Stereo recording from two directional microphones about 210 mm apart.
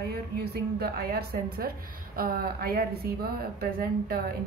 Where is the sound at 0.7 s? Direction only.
45° right (ahead or behind).